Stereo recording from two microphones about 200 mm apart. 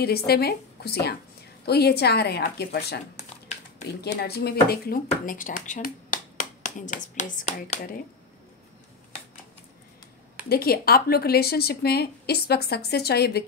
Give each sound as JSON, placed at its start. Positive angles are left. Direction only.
{"t": 0.3, "sound": "speech", "side_deg": 50}
{"t": 4.2, "sound": "speech", "side_deg": 55}
{"t": 10.5, "sound": "speech", "side_deg": 50}